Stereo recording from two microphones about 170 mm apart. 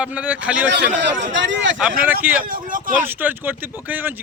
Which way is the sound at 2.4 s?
55° right (ahead or behind).